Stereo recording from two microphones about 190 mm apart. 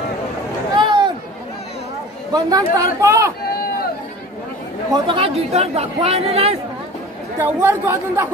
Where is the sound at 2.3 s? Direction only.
20° right (ahead or behind).